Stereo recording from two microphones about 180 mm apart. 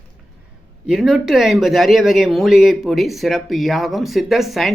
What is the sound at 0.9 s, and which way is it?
Speech, centre (ahead or behind).